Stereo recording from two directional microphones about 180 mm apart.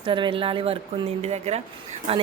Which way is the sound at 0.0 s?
30° right (ahead or behind).